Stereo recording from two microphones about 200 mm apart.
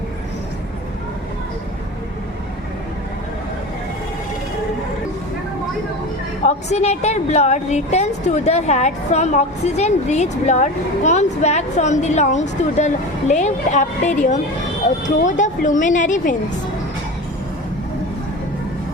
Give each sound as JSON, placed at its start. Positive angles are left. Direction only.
{"t": 6.4, "sound": "a woman's voice", "side_deg": 35}